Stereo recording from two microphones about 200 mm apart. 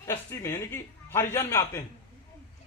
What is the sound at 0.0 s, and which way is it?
A man's voice, 15° left (ahead or behind).